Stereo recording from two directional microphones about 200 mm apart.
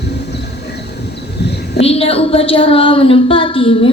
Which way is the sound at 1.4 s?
55° left (ahead or behind).